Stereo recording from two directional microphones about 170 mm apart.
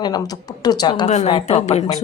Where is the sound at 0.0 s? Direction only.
25° left (ahead or behind).